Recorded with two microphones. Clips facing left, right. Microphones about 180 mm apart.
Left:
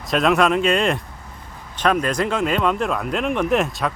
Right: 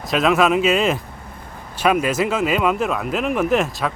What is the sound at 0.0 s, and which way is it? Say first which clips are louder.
Speech: right 1 dB; centre (ahead or behind).